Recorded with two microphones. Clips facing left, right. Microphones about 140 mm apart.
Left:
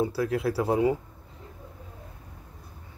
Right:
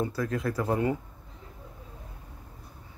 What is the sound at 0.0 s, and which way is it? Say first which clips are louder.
Speech: left 3 dB; 10° left (ahead or behind).